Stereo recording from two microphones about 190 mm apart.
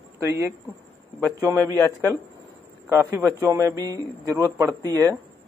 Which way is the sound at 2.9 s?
15° right (ahead or behind).